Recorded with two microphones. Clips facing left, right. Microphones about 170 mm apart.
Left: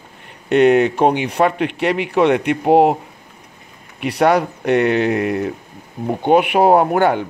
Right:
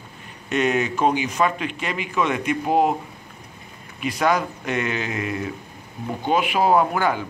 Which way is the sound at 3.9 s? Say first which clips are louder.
Left 6 dB; 65° left (ahead or behind).